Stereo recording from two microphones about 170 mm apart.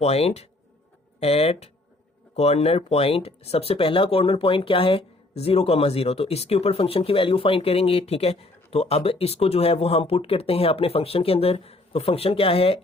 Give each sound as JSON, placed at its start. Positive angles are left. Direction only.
{"t": 0.0, "sound": "speech", "side_deg": 35}